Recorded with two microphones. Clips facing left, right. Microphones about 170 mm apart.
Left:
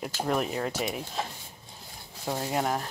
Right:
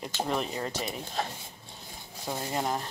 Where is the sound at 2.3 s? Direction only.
5° left (ahead or behind).